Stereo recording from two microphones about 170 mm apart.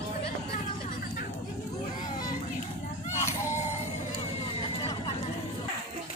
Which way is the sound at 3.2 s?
15° left (ahead or behind).